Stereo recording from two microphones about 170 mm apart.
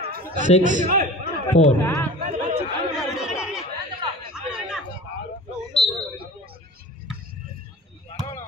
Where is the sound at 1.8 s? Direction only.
15° left (ahead or behind).